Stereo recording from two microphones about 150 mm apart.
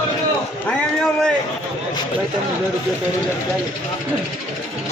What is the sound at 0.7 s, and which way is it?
Speech, 5° left (ahead or behind).